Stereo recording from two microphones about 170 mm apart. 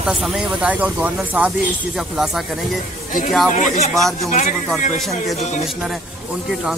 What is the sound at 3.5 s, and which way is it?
Speech, 40° left (ahead or behind).